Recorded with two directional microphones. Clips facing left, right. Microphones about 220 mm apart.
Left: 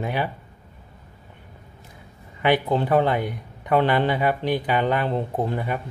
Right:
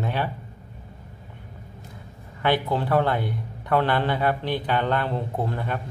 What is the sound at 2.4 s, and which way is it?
Speech, 15° left (ahead or behind).